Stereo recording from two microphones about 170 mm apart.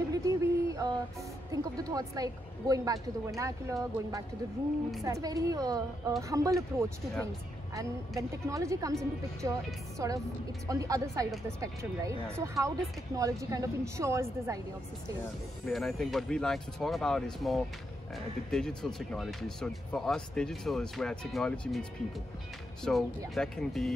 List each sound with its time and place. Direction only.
0.1 s a sound: 20° right (ahead or behind)
1.5 s a woman's voice: 20° right (ahead or behind)
8.2 s a woman's voice: 20° right (ahead or behind)
15.6 s speech: centre (ahead or behind)
22.8 s speech: centre (ahead or behind)